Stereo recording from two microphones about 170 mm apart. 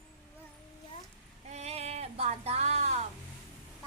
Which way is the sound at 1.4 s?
40° right (ahead or behind).